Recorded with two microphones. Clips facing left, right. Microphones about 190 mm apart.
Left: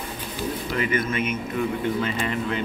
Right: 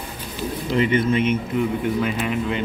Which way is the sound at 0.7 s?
25° right (ahead or behind).